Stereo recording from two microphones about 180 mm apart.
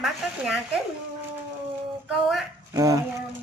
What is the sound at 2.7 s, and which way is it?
Speech, 20° right (ahead or behind).